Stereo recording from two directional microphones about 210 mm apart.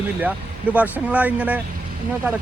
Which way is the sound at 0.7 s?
5° right (ahead or behind).